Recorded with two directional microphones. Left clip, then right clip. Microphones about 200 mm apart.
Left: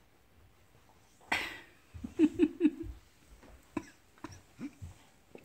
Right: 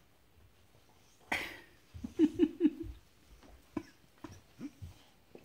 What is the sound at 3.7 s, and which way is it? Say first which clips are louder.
Cough: left 2 dB; centre (ahead or behind).